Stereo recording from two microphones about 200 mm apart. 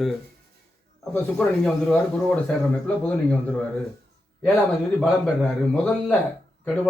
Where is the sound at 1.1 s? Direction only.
Centre (ahead or behind).